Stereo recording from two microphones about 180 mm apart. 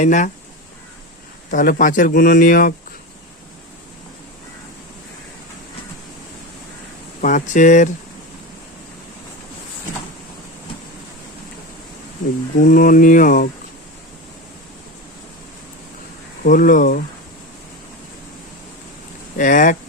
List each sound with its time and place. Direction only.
0.0 s speech: 45° left (ahead or behind)
1.5 s speech: 45° left (ahead or behind)
7.2 s speech: 45° left (ahead or behind)
12.5 s speech: 50° left (ahead or behind)
16.4 s speech: 50° left (ahead or behind)
19.4 s speech: 45° left (ahead or behind)